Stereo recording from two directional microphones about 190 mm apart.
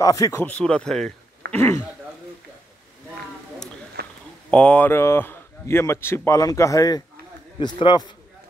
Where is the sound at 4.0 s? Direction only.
55° right (ahead or behind).